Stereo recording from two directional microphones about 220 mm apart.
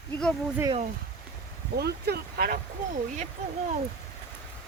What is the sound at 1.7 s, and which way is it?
Speech, 45° right (ahead or behind).